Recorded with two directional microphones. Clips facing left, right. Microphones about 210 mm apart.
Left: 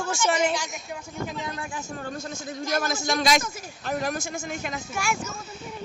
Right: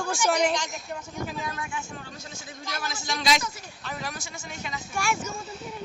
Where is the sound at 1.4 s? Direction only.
30° left (ahead or behind); by 4.8 s 50° left (ahead or behind).